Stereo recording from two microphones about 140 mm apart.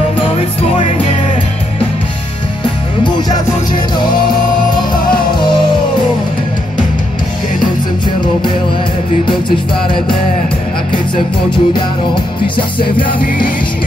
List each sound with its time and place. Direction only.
0.4 s music: 40° left (ahead or behind)
3.0 s music: 35° left (ahead or behind)
9.8 s music: 35° left (ahead or behind)
13.0 s music: 80° left